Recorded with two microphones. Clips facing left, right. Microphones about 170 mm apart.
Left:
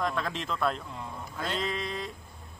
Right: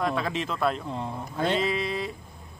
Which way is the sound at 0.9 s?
30° right (ahead or behind).